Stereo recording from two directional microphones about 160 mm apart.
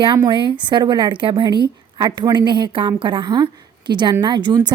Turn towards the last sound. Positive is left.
turn(degrees=-30)  # may be behind; listen again after turning